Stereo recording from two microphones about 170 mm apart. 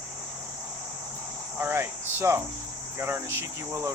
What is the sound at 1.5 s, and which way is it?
Speech, 15° right (ahead or behind).